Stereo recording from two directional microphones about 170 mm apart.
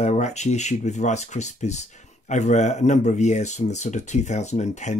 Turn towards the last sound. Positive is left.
turn(degrees=45)  # may be behind; listen again after turning